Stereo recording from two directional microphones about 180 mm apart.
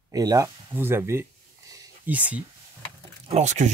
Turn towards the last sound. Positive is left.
turn(degrees=-40)  # may be behind; listen again after turning